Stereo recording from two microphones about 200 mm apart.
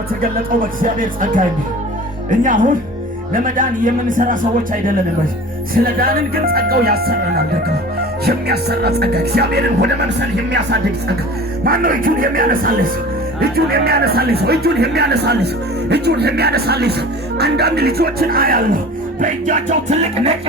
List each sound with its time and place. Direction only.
0.2 s a man's voice: 45° right (ahead or behind)
11.6 s a man's voice: 45° right (ahead or behind)